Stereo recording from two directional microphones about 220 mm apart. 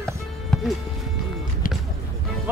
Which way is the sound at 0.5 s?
5° left (ahead or behind).